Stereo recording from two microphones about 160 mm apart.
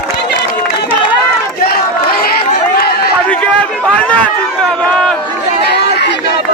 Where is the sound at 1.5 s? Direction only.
70° left (ahead or behind).